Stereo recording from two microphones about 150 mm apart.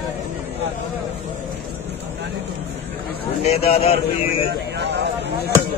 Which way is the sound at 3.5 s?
45° left (ahead or behind).